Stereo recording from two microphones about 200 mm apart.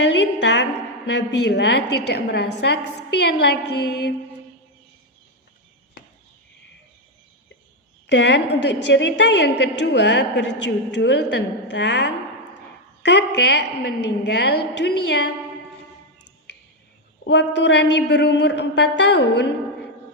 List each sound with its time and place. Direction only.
0.0 s a woman's voice: 60° left (ahead or behind)
8.0 s a woman's voice: 60° left (ahead or behind)
17.2 s a woman's voice: 60° left (ahead or behind)